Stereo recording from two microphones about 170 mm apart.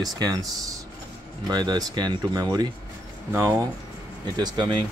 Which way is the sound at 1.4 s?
25° right (ahead or behind).